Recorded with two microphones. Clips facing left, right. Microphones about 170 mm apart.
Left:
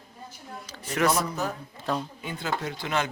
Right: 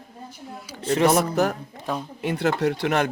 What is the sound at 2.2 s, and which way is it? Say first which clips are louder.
Speech: right 9 dB; 70° right (ahead or behind).